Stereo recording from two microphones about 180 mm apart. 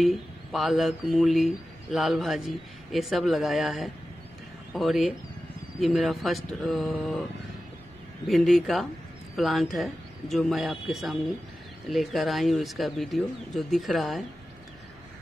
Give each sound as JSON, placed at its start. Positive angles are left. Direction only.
{"t": 0.0, "sound": "speech", "side_deg": 0}
{"t": 8.3, "sound": "speech", "side_deg": 0}